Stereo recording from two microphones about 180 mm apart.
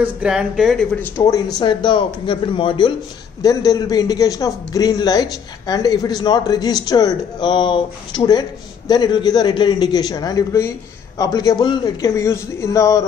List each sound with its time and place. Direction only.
0.0 s speech: 5° right (ahead or behind)
1.0 s a man's voice: 15° left (ahead or behind)